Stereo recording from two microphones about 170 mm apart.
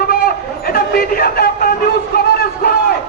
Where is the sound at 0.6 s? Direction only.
60° left (ahead or behind).